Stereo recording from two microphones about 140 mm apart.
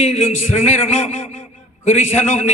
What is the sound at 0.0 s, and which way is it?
A man's voice, 50° left (ahead or behind).